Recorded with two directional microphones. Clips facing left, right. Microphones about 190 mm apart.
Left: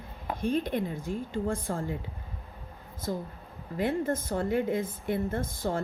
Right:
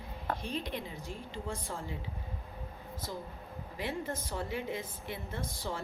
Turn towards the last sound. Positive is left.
turn(degrees=50)  # may be behind; listen again after turning